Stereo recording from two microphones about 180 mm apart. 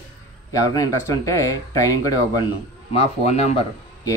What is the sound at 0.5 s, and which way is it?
Speech, 20° left (ahead or behind).